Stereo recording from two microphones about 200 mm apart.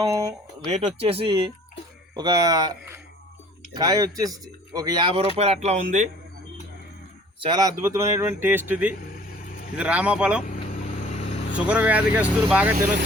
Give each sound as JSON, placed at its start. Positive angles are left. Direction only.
{"t": 0.0, "sound": "speech", "side_deg": -20}
{"t": 0.7, "sound": "speech", "side_deg": -30}
{"t": 7.3, "sound": "speech", "side_deg": -20}
{"t": 10.4, "sound": "vehicle", "side_deg": 40}
{"t": 11.5, "sound": "speech", "side_deg": -5}